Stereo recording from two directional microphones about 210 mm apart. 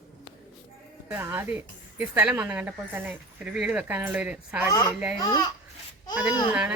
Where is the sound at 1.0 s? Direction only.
10° right (ahead or behind).